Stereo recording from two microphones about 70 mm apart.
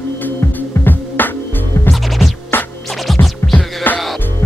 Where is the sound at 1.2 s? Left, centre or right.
Left.